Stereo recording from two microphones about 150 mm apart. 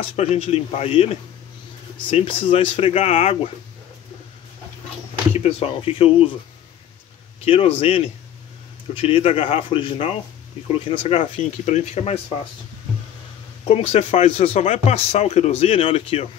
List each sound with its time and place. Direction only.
0.0 s speech: 45° left (ahead or behind)
5.3 s speech: 45° left (ahead or behind)
7.4 s speech: 40° left (ahead or behind)
8.9 s speech: 40° left (ahead or behind)
13.7 s speech: 40° left (ahead or behind)